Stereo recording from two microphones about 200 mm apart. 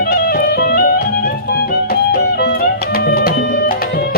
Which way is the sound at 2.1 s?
55° left (ahead or behind).